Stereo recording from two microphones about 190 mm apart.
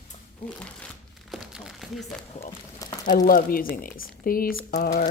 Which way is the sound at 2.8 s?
20° left (ahead or behind).